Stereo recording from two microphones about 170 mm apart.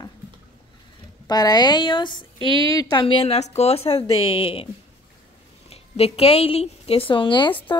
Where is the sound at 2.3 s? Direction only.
30° right (ahead or behind).